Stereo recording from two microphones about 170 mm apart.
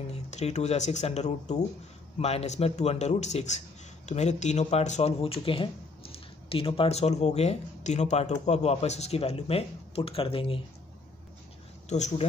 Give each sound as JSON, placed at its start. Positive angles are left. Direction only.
{"t": 0.1, "sound": "a man's voice", "side_deg": 40}
{"t": 11.9, "sound": "a man's voice", "side_deg": 40}